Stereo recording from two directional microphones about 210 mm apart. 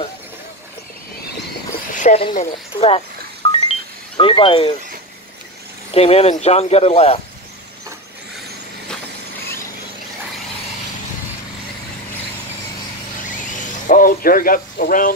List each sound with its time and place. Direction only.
2.0 s a sound: 35° left (ahead or behind)
2.3 s speech: 30° left (ahead or behind)
3.4 s music: 25° left (ahead or behind)
4.2 s speech: 25° left (ahead or behind)
5.9 s speech: 30° left (ahead or behind)
13.2 s a sound: 40° left (ahead or behind)